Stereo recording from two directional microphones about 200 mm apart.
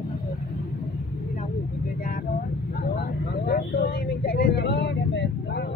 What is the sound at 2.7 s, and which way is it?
Vehicle, 55° left (ahead or behind).